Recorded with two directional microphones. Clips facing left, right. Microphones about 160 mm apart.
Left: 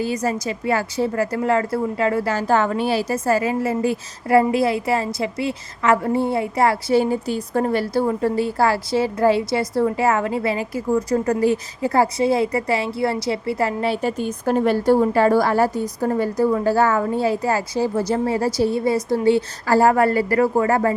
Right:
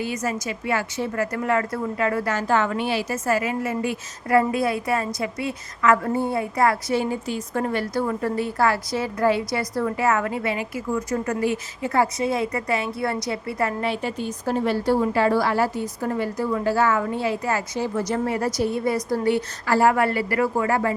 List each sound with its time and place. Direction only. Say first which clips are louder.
0.0 s a woman's voice: left 4 dB; 35° left (ahead or behind)